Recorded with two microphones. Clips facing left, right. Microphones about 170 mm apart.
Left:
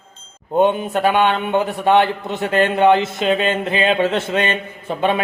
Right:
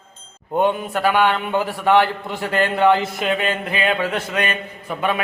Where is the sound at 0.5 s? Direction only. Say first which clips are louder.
Left 3 dB; 25° left (ahead or behind).